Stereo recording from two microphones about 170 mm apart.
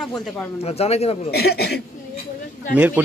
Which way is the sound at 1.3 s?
70° left (ahead or behind).